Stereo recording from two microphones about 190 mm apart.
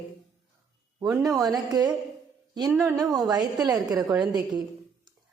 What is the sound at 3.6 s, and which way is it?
Speech, 20° right (ahead or behind).